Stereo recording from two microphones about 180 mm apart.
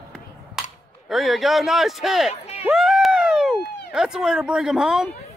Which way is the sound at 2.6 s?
5° right (ahead or behind).